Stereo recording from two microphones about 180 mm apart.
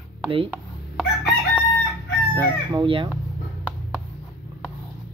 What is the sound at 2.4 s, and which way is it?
Speech, 25° right (ahead or behind).